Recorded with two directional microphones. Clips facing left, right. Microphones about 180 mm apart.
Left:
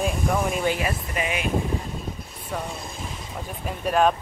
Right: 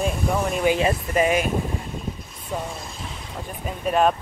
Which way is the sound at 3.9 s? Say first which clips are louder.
Right 1 dB; centre (ahead or behind).